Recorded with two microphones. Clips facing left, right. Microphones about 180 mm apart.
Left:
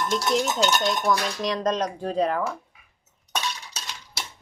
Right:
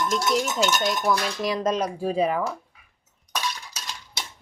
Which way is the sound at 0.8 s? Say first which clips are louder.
Even; 5° right (ahead or behind).